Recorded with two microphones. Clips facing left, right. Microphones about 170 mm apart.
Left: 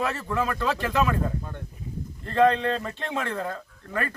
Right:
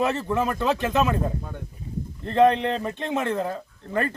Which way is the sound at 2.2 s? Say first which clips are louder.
Right 2 dB; 20° right (ahead or behind).